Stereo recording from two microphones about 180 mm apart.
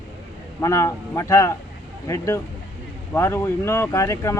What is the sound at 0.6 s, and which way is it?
Speech, 15° left (ahead or behind).